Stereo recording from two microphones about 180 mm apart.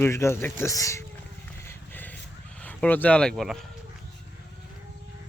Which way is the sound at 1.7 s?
10° left (ahead or behind).